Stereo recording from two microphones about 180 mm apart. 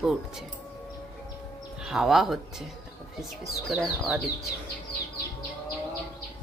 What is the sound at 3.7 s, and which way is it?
Speech, 5° right (ahead or behind).